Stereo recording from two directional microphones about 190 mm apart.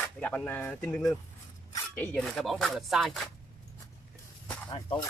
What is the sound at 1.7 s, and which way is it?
Zipper, 10° left (ahead or behind).